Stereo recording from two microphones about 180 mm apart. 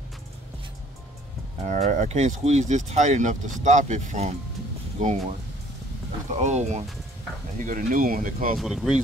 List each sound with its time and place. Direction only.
1.6 s speech: 40° right (ahead or behind)
6.3 s speech: 40° right (ahead or behind)
8.5 s speech: centre (ahead or behind)